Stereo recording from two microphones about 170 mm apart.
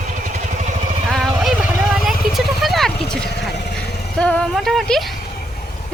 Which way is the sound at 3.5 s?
80° left.